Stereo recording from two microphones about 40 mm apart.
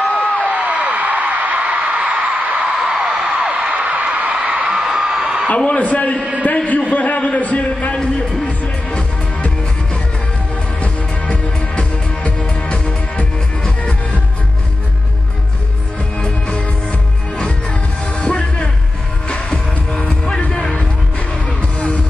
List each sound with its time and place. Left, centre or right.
0.0 s a sound: left
0.5 s a sound: right
2.9 s music: right
4.8 s whoop: right
5.2 s a sound: right
5.8 s a man's voice: left
7.9 s music: left
8.5 s music: left
10.8 s music: left
16.3 s music: left
18.2 s music: left
21.5 s music: left